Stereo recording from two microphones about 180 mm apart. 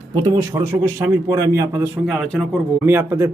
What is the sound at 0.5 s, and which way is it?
A man's voice, 15° right (ahead or behind).